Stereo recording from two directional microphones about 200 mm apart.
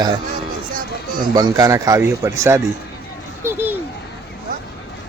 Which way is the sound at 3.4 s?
10° right (ahead or behind).